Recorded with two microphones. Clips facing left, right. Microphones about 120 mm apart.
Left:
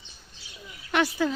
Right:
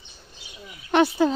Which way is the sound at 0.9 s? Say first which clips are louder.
Right 6 dB; 25° right (ahead or behind).